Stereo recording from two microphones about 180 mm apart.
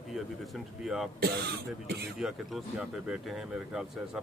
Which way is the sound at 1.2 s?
60° right (ahead or behind).